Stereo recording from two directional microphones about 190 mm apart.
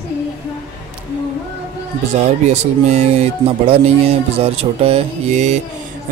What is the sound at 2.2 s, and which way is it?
Speech, 35° right (ahead or behind).